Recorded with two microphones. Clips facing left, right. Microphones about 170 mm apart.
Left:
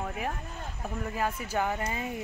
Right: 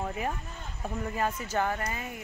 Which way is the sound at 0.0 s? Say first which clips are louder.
Right 1 dB; centre (ahead or behind).